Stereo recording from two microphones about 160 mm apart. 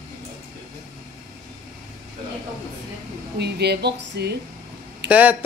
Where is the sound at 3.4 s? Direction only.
90° right.